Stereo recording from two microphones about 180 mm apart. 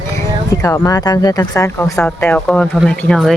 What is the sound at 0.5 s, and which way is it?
Speech, 20° left (ahead or behind).